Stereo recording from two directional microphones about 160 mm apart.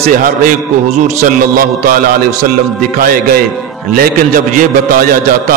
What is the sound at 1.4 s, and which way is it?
A man's voice, 60° right (ahead or behind).